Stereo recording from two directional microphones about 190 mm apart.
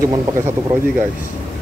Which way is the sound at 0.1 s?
20° right (ahead or behind).